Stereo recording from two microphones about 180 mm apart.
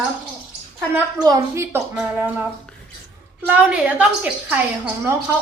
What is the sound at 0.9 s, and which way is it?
A woman's voice, 15° right (ahead or behind).